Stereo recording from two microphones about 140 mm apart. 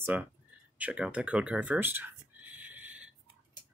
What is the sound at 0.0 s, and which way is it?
Speech, 10° right (ahead or behind).